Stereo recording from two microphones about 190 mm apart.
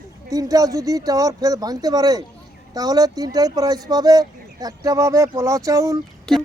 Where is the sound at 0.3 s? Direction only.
20° right (ahead or behind).